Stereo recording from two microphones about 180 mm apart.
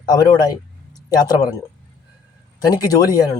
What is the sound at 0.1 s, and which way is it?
Speech, 20° left (ahead or behind).